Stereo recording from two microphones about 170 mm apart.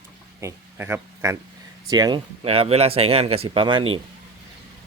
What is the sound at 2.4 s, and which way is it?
Speech, 35° right (ahead or behind).